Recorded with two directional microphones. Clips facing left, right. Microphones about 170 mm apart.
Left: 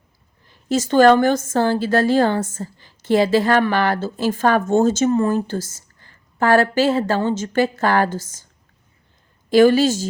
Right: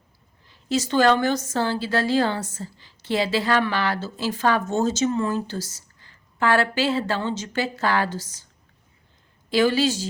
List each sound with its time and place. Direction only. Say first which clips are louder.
0.4 s a woman's voice: left 4 dB; 50° left (ahead or behind)
9.5 s a woman's voice: left 7 dB; 50° left (ahead or behind)